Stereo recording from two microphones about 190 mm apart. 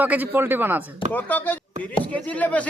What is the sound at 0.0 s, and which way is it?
Speech, 10° right (ahead or behind).